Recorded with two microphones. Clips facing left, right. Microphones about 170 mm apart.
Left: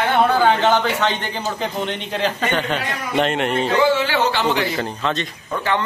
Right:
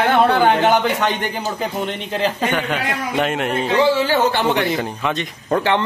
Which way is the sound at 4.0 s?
45° right (ahead or behind).